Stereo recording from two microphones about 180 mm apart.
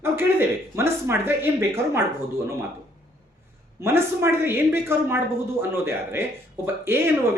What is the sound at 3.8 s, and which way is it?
Speech, 15° right (ahead or behind).